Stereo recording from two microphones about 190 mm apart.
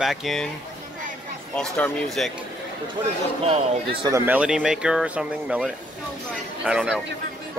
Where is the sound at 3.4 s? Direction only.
30° right (ahead or behind).